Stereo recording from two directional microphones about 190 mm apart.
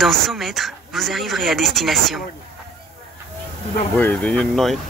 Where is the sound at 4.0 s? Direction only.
10° left (ahead or behind).